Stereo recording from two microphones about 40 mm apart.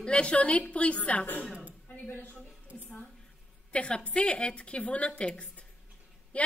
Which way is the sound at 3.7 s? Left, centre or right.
Left.